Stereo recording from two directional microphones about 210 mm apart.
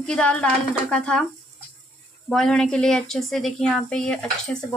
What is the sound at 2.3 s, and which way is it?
A woman's voice, 5° left (ahead or behind).